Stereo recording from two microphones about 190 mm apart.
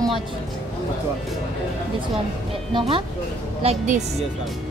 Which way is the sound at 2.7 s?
30° right (ahead or behind).